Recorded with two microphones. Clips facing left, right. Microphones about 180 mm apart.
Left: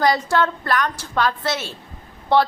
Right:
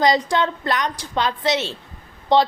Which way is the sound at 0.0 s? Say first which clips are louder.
Even; 20° right (ahead or behind).